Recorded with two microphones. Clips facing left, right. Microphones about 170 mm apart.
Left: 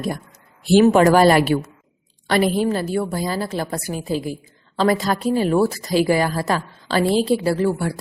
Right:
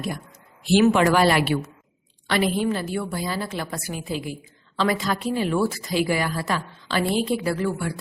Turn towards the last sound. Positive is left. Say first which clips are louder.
# left 5 dB
turn(degrees=35)  # may be behind; listen again after turning